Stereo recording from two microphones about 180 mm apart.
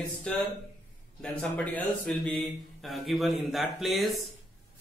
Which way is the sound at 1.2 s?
5° left (ahead or behind).